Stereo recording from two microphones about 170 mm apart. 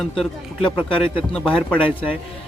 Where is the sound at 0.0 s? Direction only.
Centre (ahead or behind).